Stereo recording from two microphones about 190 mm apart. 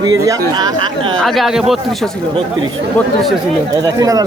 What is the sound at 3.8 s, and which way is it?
Speech, 20° right (ahead or behind).